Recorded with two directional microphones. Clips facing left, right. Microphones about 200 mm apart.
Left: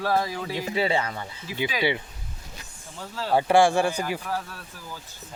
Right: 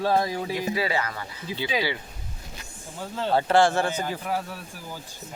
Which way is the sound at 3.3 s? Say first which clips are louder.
Left 1 dB; 15° left (ahead or behind).